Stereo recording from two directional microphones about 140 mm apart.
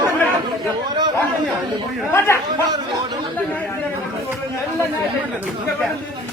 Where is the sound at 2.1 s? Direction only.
20° left (ahead or behind).